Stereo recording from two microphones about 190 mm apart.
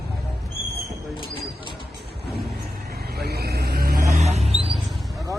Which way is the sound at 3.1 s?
55° right (ahead or behind).